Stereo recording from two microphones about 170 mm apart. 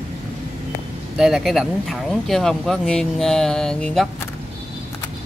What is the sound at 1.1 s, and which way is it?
Speech, centre (ahead or behind).